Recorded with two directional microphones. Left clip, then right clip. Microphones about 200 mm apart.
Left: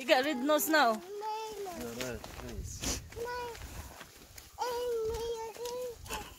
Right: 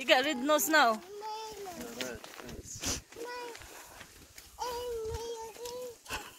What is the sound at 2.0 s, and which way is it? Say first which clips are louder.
Speech: right 1 dB; 40° left (ahead or behind).